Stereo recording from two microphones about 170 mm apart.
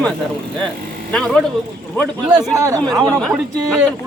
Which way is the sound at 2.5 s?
20° right (ahead or behind).